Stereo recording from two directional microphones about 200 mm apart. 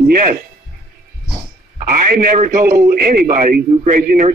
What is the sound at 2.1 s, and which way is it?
A man's voice, 45° right (ahead or behind).